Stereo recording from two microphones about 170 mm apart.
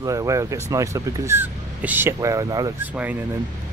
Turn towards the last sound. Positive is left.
turn(degrees=-10)  # may be behind; listen again after turning